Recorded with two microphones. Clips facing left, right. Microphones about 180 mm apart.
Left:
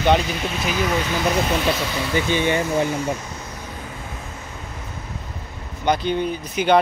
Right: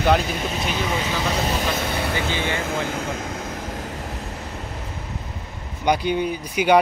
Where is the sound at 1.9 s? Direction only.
55° right (ahead or behind).